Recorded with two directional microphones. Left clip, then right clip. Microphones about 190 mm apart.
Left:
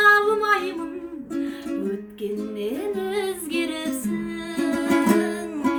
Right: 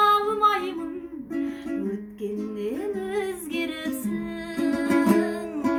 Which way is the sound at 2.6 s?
15° left (ahead or behind).